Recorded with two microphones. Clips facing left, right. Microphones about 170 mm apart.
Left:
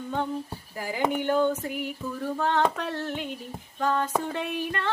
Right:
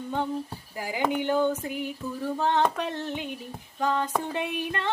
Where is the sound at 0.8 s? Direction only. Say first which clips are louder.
Even; 15° right (ahead or behind).